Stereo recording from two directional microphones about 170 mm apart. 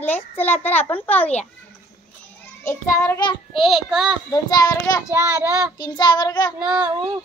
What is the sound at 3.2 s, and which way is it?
Speech, 30° left (ahead or behind).